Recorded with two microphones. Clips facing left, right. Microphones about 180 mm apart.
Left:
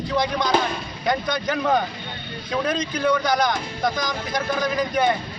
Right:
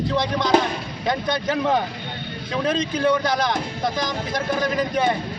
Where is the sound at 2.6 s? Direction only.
25° right (ahead or behind).